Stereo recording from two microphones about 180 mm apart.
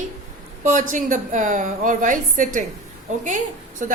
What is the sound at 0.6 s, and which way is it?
A woman's voice, 40° right (ahead or behind).